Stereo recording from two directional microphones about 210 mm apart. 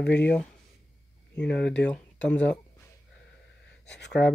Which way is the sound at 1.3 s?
55° left (ahead or behind).